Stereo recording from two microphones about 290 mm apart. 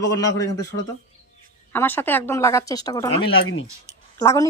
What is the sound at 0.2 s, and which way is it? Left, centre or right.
Speech, centre.